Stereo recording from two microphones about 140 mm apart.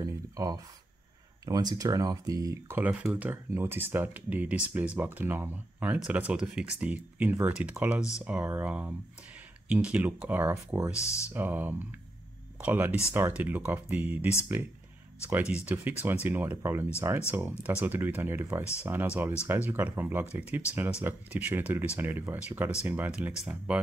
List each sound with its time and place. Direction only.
0.0 s a sound: 25° right (ahead or behind)
1.4 s speech: 30° right (ahead or behind)
10.9 s speech: 20° left (ahead or behind)
11.3 s speech: 15° right (ahead or behind)